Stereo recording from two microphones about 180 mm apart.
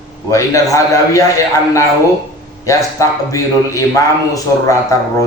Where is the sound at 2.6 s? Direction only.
15° left (ahead or behind).